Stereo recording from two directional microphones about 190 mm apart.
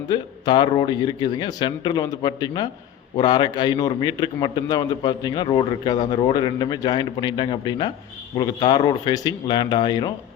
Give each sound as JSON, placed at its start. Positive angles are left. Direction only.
{"t": 0.1, "sound": "a man's voice", "side_deg": 25}